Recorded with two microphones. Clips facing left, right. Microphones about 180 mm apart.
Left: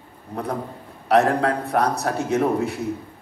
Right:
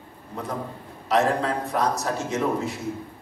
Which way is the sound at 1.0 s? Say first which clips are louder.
Left 4 dB; 60° left (ahead or behind).